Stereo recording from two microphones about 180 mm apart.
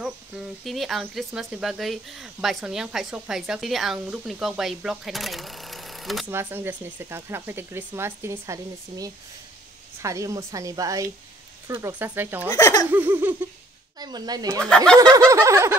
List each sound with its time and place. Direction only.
0.0 s speech: centre (ahead or behind)
6.3 s speech: 10° right (ahead or behind)
12.5 s speech: 20° left (ahead or behind)
12.9 s speech: 10° right (ahead or behind)
13.9 s speech: 20° right (ahead or behind)